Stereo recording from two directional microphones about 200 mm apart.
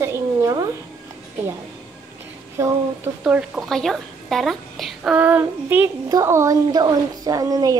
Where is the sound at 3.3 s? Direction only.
Centre (ahead or behind).